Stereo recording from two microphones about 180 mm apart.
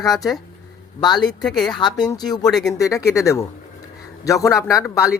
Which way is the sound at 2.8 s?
15° left (ahead or behind).